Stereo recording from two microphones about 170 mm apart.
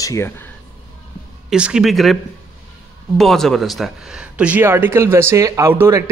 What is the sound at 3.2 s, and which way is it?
Speech, centre (ahead or behind).